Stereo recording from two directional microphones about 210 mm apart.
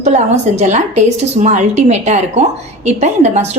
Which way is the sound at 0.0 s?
35° right (ahead or behind).